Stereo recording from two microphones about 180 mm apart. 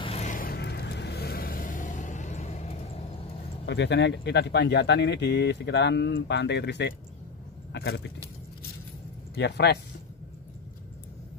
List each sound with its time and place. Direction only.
0.0 s vehicle: 35° left (ahead or behind)
3.6 s speech: 75° left (ahead or behind)
9.3 s speech: 65° left (ahead or behind)